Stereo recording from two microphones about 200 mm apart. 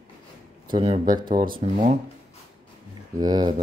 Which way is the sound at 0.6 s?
25° right (ahead or behind).